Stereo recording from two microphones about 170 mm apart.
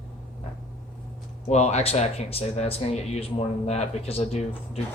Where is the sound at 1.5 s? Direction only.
40° left (ahead or behind).